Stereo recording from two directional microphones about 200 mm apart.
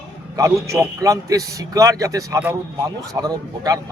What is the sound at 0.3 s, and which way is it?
A man's voice, 15° right (ahead or behind).